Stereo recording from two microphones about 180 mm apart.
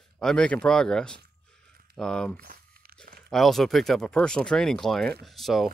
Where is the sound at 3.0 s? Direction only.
60° right (ahead or behind).